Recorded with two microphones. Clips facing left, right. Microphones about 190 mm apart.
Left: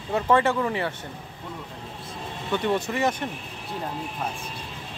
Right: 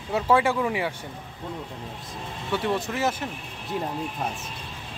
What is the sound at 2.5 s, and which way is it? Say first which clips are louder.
Speech: left 2 dB; 5° right (ahead or behind).